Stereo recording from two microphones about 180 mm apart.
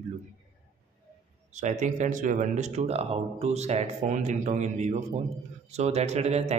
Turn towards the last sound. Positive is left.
turn(degrees=-35)  # may be behind; listen again after turning